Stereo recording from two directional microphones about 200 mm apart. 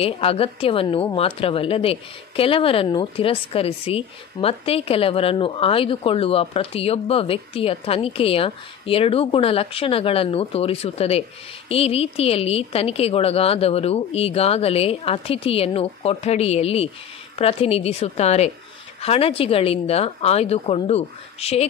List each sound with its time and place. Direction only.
0.0 s a woman's voice: 30° left (ahead or behind)